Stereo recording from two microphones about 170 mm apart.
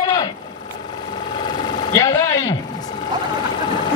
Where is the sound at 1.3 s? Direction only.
25° left (ahead or behind).